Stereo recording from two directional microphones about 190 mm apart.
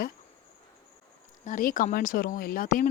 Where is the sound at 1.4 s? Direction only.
45° left (ahead or behind).